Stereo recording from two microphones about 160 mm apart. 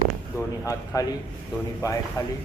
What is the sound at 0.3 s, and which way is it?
A man's voice, 20° left (ahead or behind).